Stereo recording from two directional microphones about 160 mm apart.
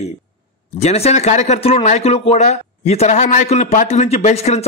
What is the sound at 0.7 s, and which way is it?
Speech, 40° left (ahead or behind).